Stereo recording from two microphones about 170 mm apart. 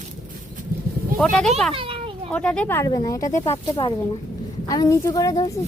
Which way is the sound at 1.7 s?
30° right (ahead or behind).